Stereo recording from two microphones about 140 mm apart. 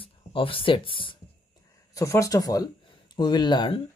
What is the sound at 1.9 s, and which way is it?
Speech, 20° left (ahead or behind).